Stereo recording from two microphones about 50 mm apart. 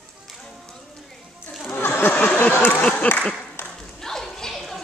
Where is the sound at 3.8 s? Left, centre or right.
Centre.